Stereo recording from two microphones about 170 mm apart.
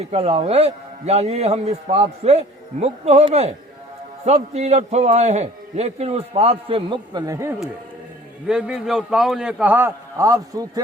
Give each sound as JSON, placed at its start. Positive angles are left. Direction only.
{"t": 0.1, "sound": "a man's voice", "side_deg": -35}
{"t": 8.4, "sound": "a man's voice", "side_deg": -5}